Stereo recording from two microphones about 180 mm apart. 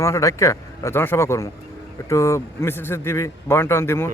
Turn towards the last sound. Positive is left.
turn(degrees=15)  # may be behind; listen again after turning